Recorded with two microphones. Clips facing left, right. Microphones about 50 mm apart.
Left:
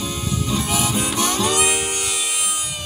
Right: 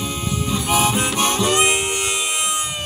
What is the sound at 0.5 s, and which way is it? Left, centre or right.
Harmonica, right.